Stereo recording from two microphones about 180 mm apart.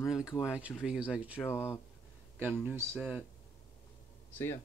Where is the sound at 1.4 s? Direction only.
15° left (ahead or behind).